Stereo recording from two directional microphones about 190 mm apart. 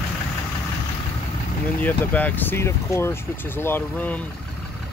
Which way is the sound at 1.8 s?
10° left (ahead or behind).